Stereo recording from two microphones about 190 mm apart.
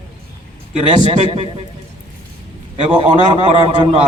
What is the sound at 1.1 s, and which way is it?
Speech, 30° right (ahead or behind).